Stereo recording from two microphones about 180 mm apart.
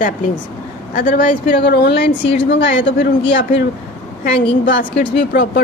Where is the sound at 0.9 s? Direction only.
50° left (ahead or behind); by 2.0 s 65° left (ahead or behind).